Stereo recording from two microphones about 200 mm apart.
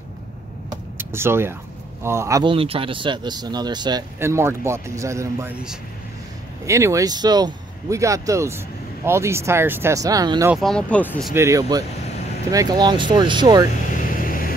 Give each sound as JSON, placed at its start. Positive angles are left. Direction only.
{"t": 0.7, "sound": "vehicle", "side_deg": -10}
{"t": 2.0, "sound": "speech", "side_deg": -15}
{"t": 2.5, "sound": "speech", "side_deg": -25}
{"t": 6.6, "sound": "speech", "side_deg": -15}
{"t": 10.5, "sound": "speech", "side_deg": 0}
{"t": 11.3, "sound": "speech", "side_deg": -15}
{"t": 14.1, "sound": "vehicle", "side_deg": 45}